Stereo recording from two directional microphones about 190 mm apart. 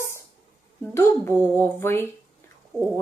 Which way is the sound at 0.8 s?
10° left (ahead or behind).